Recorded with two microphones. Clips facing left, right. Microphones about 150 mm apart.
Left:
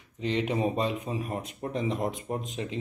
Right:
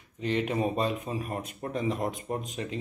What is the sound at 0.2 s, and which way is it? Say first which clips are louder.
A man's voice: even; 20° left (ahead or behind).